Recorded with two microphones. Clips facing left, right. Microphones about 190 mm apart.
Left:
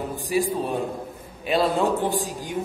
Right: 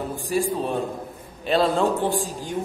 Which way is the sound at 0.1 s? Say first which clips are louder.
Left 1 dB; 15° left (ahead or behind).